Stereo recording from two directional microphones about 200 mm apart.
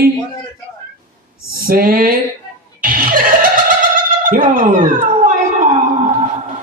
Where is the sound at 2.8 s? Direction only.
45° right (ahead or behind).